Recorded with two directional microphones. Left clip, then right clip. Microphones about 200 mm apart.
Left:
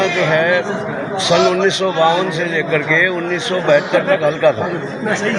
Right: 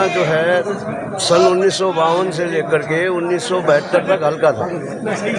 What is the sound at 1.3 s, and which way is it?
A man's voice, 20° right (ahead or behind).